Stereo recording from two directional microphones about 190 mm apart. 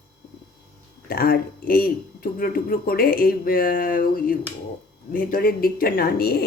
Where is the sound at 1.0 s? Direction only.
55° left (ahead or behind).